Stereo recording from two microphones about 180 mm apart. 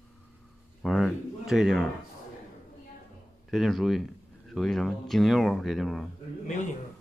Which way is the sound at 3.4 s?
Centre (ahead or behind).